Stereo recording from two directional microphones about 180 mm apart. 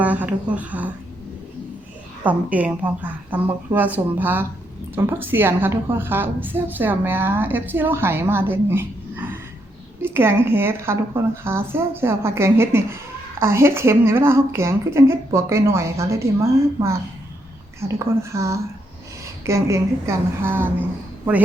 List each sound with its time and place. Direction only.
0.0 s a woman's voice: 10° right (ahead or behind)
2.2 s a woman's voice: 10° right (ahead or behind)